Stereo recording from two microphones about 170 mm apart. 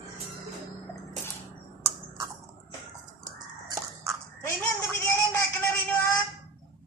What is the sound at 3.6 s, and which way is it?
Biting, 20° right (ahead or behind).